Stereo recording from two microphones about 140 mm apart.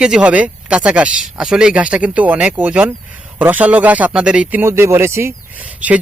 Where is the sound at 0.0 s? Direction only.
10° right (ahead or behind).